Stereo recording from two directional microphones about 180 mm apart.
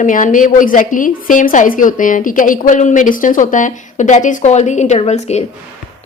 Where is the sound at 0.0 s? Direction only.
45° left (ahead or behind).